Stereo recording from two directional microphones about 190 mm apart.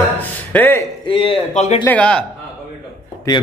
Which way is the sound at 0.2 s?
10° left (ahead or behind).